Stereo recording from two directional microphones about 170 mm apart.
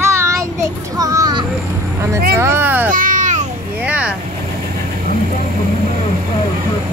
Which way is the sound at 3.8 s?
10° right (ahead or behind).